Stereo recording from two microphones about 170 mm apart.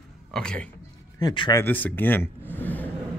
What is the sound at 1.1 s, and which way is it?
Speech, 25° left (ahead or behind).